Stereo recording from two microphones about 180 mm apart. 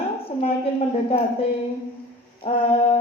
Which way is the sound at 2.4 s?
30° left (ahead or behind).